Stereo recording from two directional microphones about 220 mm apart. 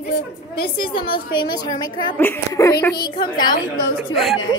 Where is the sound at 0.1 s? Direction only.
45° left (ahead or behind).